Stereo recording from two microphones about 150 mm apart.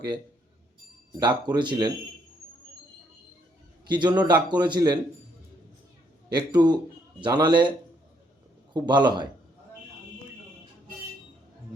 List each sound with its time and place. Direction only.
1.2 s a man's voice: 30° right (ahead or behind)
3.8 s a man's voice: 30° right (ahead or behind)
6.3 s a man's voice: 30° right (ahead or behind)
8.7 s a man's voice: 30° right (ahead or behind)